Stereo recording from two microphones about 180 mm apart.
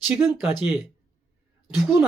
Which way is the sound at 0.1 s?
10° right (ahead or behind).